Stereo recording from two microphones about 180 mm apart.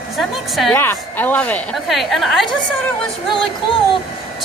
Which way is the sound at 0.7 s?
10° left (ahead or behind).